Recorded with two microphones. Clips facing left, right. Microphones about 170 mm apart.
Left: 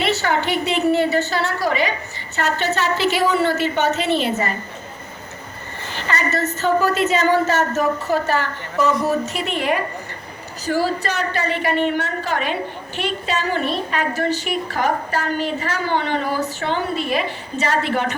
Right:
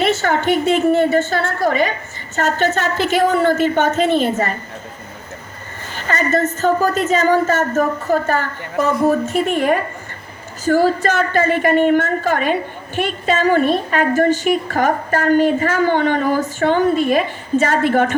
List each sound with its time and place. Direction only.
0.0 s a woman's voice: 50° right (ahead or behind)
5.9 s a woman's voice: 50° right (ahead or behind)